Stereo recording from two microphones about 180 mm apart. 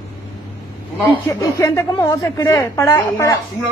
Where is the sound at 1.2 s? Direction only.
15° left (ahead or behind).